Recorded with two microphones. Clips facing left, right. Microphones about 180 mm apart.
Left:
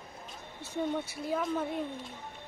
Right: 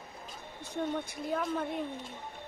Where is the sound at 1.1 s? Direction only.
Centre (ahead or behind).